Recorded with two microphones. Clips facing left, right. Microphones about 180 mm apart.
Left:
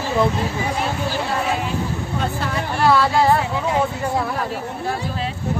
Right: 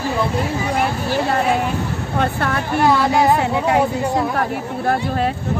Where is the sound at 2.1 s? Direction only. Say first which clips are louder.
Right 5 dB; 60° right (ahead or behind).